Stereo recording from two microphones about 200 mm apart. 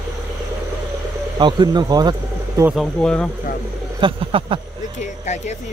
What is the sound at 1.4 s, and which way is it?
Speech, 20° right (ahead or behind).